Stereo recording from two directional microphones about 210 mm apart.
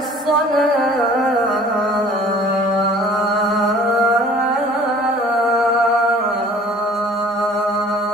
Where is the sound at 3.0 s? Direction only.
Centre (ahead or behind).